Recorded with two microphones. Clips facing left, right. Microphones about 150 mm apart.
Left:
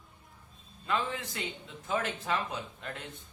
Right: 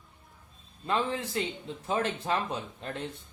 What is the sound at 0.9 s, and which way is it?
Speech, 30° right (ahead or behind).